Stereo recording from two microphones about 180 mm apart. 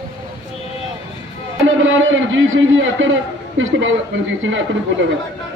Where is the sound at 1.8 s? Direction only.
90° right.